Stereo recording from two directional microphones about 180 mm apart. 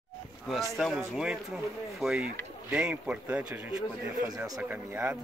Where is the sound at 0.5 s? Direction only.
Centre (ahead or behind).